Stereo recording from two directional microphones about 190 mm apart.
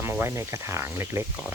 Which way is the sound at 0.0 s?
15° right (ahead or behind).